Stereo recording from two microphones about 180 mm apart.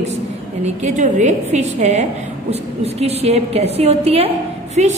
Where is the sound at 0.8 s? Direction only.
45° right (ahead or behind).